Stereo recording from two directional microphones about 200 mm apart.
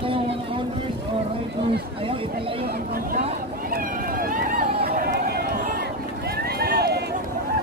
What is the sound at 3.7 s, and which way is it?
Vehicle, 45° right (ahead or behind).